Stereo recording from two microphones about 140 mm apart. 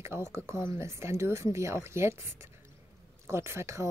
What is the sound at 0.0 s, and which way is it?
Speech, 20° right (ahead or behind).